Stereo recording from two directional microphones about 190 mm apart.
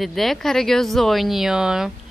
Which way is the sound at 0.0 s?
Centre (ahead or behind).